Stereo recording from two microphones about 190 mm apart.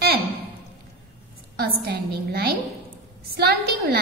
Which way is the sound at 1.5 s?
55° right (ahead or behind).